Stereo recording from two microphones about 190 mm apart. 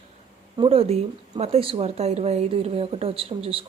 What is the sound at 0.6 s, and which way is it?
Speech, 30° right (ahead or behind).